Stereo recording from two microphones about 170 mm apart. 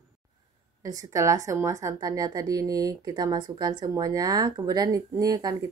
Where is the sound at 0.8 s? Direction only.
20° right (ahead or behind).